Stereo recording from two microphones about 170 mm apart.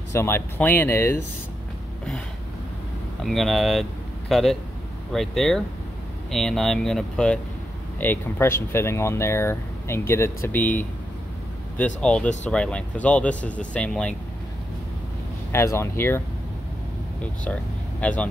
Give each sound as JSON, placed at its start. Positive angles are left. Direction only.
{"t": 0.1, "sound": "speech", "side_deg": 15}
{"t": 3.3, "sound": "speech", "side_deg": 0}
{"t": 15.5, "sound": "speech", "side_deg": 15}
{"t": 18.0, "sound": "speech", "side_deg": 10}